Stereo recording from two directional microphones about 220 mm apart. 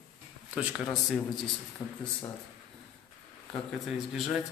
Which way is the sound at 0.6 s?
Centre (ahead or behind).